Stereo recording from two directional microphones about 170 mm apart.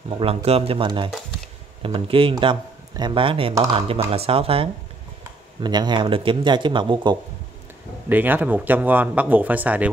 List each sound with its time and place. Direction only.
0.2 s speech: 35° right (ahead or behind)
8.1 s speech: 10° right (ahead or behind)